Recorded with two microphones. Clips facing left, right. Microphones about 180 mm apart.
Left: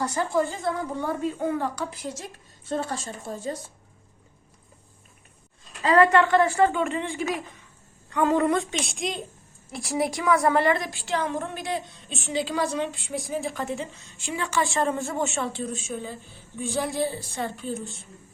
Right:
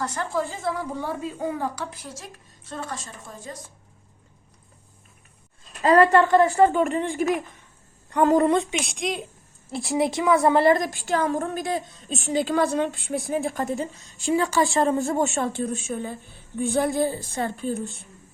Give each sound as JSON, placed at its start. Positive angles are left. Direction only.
{"t": 0.0, "sound": "a woman's voice", "side_deg": 10}
{"t": 0.3, "sound": "a woman's voice", "side_deg": 0}
{"t": 2.6, "sound": "a woman's voice", "side_deg": 30}
{"t": 5.8, "sound": "speech", "side_deg": -40}
{"t": 8.1, "sound": "speech", "side_deg": -40}
{"t": 8.4, "sound": "a woman's voice", "side_deg": -20}
{"t": 8.8, "sound": "a woman's voice", "side_deg": 0}
{"t": 9.9, "sound": "a woman's voice", "side_deg": -20}
{"t": 10.6, "sound": "a woman's voice", "side_deg": -40}